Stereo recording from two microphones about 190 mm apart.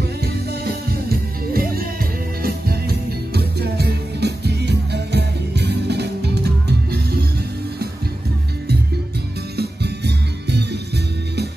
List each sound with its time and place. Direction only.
0.8 s music: 55° right (ahead or behind)
9.6 s music: 60° right (ahead or behind)